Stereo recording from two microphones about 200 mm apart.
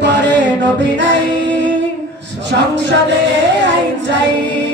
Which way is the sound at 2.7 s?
65° right (ahead or behind).